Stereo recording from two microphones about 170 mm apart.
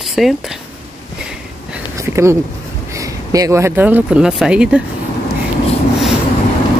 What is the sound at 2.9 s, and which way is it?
Speech, 20° right (ahead or behind).